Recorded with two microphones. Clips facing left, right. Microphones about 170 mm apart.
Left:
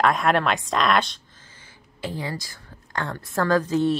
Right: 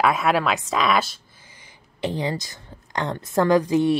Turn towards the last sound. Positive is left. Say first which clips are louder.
# right 3 dB
turn(degrees=-15)  # may be behind; listen again after turning